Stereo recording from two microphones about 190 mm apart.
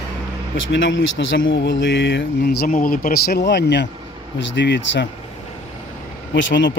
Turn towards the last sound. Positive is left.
turn(degrees=75)  # may be behind; listen again after turning